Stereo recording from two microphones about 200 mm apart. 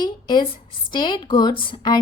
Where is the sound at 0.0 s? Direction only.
20° left (ahead or behind).